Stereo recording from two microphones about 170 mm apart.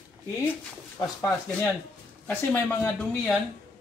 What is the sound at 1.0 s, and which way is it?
Speech, 25° left (ahead or behind).